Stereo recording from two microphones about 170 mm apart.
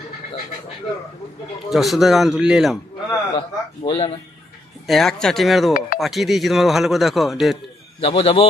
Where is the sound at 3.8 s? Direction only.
35° left (ahead or behind).